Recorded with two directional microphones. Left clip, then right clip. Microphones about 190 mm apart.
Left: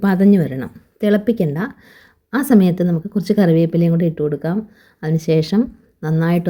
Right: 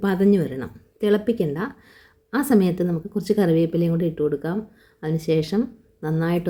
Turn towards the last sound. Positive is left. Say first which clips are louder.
# left 4 dB
turn(degrees=15)  # may be behind; listen again after turning